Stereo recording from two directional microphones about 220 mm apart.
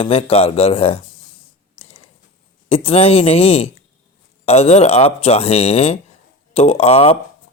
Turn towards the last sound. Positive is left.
turn(degrees=30)  # may be behind; listen again after turning